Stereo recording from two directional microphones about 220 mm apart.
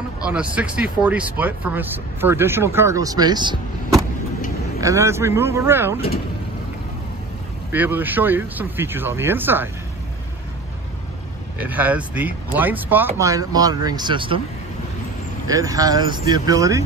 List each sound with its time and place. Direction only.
0.2 s speech: 5° right (ahead or behind)
4.7 s speech: 15° right (ahead or behind)
7.7 s speech: 10° right (ahead or behind)
11.5 s speech: 5° right (ahead or behind); by 14.4 s 20° right (ahead or behind)
15.4 s speech: 15° right (ahead or behind)